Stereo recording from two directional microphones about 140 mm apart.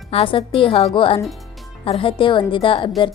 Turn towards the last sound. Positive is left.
turn(degrees=35)  # may be behind; listen again after turning